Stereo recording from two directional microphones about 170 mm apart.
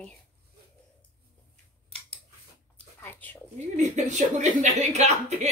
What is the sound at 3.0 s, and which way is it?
Whispering, 10° left (ahead or behind).